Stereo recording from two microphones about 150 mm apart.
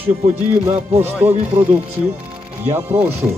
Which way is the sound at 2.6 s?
15° right (ahead or behind).